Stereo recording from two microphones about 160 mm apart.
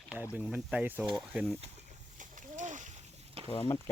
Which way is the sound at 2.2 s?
50° right (ahead or behind).